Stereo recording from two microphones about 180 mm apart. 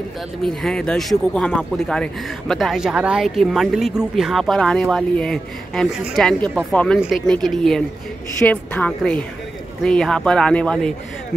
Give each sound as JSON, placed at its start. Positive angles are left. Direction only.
{"t": 0.4, "sound": "speech", "side_deg": 0}